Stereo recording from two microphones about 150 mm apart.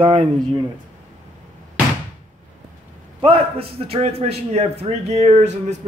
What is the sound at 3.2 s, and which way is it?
A man's voice, 40° right (ahead or behind).